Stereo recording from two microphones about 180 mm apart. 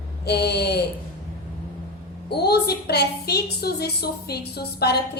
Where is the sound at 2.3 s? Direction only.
65° left (ahead or behind).